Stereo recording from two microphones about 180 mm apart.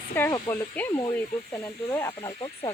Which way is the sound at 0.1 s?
15° left (ahead or behind).